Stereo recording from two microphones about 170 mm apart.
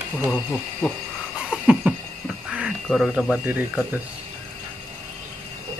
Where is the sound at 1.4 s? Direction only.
5° right (ahead or behind).